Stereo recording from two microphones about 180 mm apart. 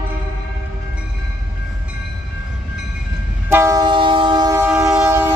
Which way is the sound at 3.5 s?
15° right (ahead or behind).